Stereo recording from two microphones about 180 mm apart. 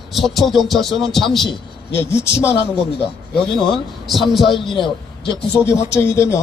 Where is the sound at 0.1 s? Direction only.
Centre (ahead or behind).